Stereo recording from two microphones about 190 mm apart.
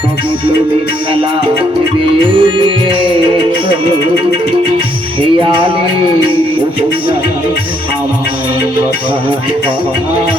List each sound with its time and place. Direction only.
2.3 s music: 25° right (ahead or behind)
5.2 s music: 25° right (ahead or behind)